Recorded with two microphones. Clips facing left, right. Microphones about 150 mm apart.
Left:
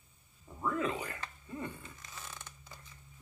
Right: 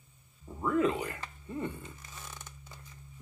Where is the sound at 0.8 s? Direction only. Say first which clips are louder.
Right 6 dB; 25° right (ahead or behind).